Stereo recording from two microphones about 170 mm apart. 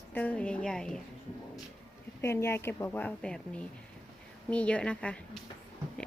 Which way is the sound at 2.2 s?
15° left (ahead or behind).